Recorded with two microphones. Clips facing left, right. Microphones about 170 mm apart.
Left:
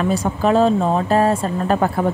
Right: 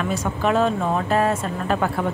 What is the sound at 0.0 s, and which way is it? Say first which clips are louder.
Speech: left 4 dB; 35° left (ahead or behind).